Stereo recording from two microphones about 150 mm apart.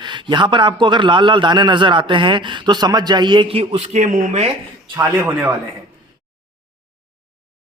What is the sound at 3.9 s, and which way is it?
Speech, 55° right (ahead or behind).